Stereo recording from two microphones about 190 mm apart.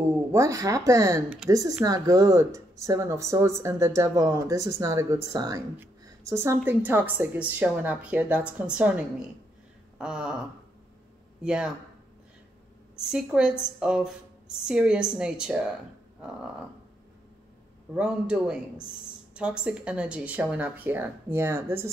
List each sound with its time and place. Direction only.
0.3 s speech: 15° right (ahead or behind)
9.9 s a sound: 5° right (ahead or behind)
11.4 s a woman's voice: 5° right (ahead or behind)
13.0 s a woman's voice: 5° right (ahead or behind)
17.9 s a woman's voice: 5° right (ahead or behind)